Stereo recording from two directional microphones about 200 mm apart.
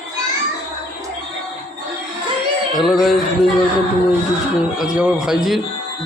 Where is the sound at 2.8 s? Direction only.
Centre (ahead or behind).